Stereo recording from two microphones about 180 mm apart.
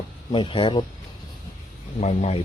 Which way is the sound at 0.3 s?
25° left (ahead or behind).